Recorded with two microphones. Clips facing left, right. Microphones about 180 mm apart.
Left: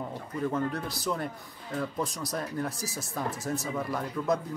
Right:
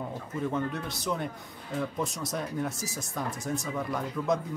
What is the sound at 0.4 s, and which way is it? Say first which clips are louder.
Speech: left 1 dB; centre (ahead or behind).